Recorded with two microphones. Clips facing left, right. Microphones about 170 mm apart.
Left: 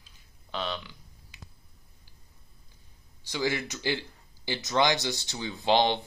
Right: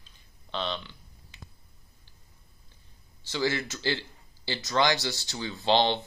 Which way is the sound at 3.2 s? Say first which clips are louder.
Right 1 dB; 15° left (ahead or behind).